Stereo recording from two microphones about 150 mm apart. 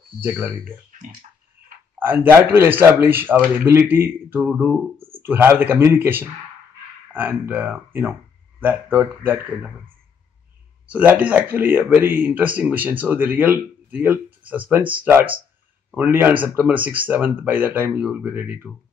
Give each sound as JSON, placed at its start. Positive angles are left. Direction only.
{"t": 0.2, "sound": "a man's voice", "side_deg": -15}
{"t": 0.9, "sound": "bathtub", "side_deg": -60}
{"t": 2.0, "sound": "a man's voice", "side_deg": -15}
{"t": 10.9, "sound": "a man's voice", "side_deg": -10}